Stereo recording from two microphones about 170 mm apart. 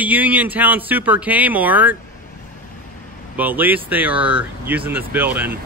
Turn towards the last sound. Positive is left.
turn(degrees=-10)  # may be behind; listen again after turning